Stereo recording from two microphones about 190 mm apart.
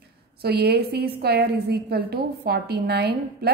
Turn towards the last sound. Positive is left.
turn(degrees=-55)  # may be behind; listen again after turning